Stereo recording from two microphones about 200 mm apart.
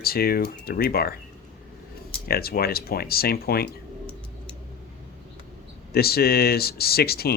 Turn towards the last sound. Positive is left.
turn(degrees=50)  # may be behind; listen again after turning